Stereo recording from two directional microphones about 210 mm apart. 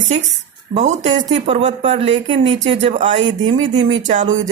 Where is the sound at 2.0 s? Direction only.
65° right (ahead or behind).